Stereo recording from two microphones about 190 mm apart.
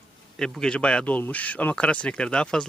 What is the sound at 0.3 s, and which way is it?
Speech, centre (ahead or behind).